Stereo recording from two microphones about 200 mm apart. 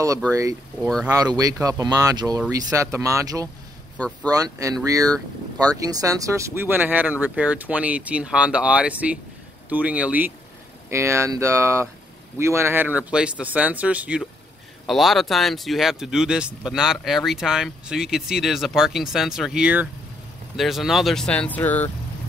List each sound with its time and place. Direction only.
0.3 s speech: 15° right (ahead or behind)
0.8 s speech: 5° left (ahead or behind)
1.1 s speech: 20° right (ahead or behind); by 21.9 s 10° left (ahead or behind)